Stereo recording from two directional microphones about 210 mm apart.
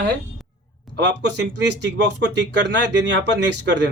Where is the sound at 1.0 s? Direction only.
55° right (ahead or behind).